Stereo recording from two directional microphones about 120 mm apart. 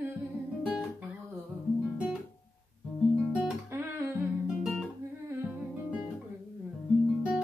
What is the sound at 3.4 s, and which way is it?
Music, 20° right (ahead or behind).